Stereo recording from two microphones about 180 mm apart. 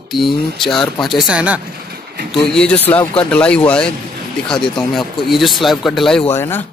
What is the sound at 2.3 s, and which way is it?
Speech, 5° left (ahead or behind).